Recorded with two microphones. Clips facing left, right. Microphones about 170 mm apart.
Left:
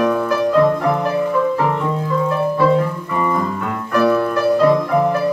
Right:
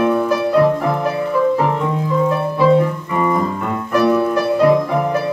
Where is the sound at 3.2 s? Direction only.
10° right (ahead or behind).